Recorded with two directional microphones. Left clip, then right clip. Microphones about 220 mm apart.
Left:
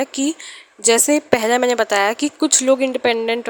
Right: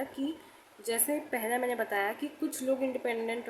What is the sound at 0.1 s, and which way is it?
Speech, 45° left (ahead or behind).